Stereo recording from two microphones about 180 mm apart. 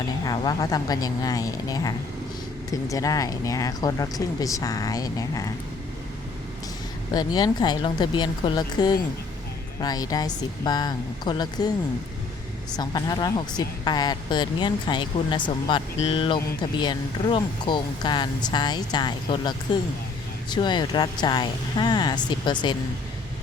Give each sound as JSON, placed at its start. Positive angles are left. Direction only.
{"t": 0.3, "sound": "speech", "side_deg": 20}
{"t": 2.9, "sound": "speech", "side_deg": 20}
{"t": 7.1, "sound": "speech", "side_deg": 25}
{"t": 12.7, "sound": "speech", "side_deg": 20}